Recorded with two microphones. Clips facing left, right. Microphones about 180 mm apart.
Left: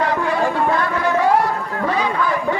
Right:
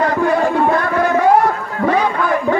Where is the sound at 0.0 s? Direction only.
45° right (ahead or behind).